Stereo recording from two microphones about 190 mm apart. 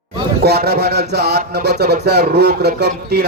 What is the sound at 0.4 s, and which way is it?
Speech, 55° right (ahead or behind).